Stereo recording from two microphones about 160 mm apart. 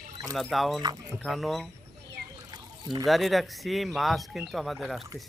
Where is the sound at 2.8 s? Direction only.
25° right (ahead or behind).